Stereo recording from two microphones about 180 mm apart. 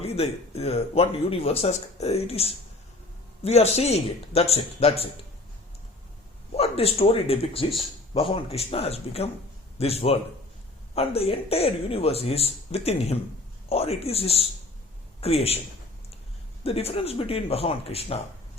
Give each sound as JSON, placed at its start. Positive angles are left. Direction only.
{"t": 0.0, "sound": "speech", "side_deg": 35}
{"t": 6.6, "sound": "speech", "side_deg": 35}
{"t": 16.6, "sound": "speech", "side_deg": 35}